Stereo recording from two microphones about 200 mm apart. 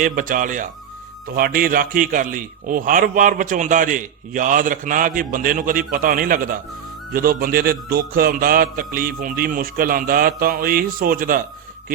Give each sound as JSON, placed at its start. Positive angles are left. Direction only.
{"t": 0.0, "sound": "a man's voice", "side_deg": -45}